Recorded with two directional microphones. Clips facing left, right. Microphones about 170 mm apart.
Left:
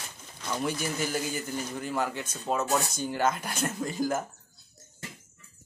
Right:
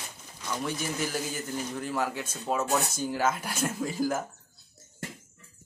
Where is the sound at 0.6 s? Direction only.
Centre (ahead or behind).